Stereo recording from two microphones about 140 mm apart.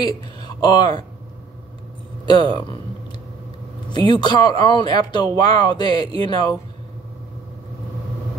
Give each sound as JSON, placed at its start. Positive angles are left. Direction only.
{"t": 0.0, "sound": "speech", "side_deg": 30}
{"t": 2.2, "sound": "speech", "side_deg": 30}
{"t": 4.1, "sound": "speech", "side_deg": 30}